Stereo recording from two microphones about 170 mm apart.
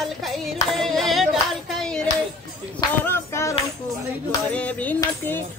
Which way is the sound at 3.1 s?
15° left (ahead or behind).